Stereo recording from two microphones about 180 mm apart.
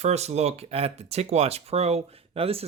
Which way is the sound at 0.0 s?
35° right (ahead or behind).